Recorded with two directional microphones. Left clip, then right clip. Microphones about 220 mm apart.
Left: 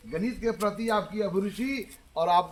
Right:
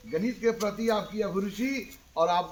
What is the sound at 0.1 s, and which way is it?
A man's voice, 50° left (ahead or behind).